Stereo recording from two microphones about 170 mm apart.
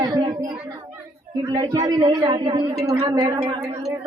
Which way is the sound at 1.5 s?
25° right (ahead or behind).